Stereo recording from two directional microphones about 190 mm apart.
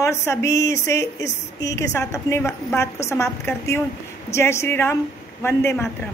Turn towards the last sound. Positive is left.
turn(degrees=15)  # may be behind; listen again after turning